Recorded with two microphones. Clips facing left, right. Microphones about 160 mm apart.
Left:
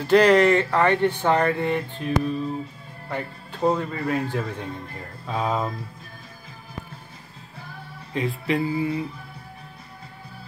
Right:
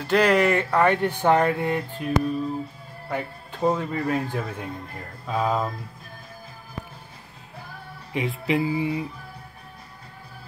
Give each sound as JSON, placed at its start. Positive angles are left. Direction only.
{"t": 0.0, "sound": "speech", "side_deg": 0}
{"t": 3.1, "sound": "speech", "side_deg": -10}
{"t": 5.2, "sound": "a sound", "side_deg": 0}
{"t": 8.1, "sound": "speech", "side_deg": -20}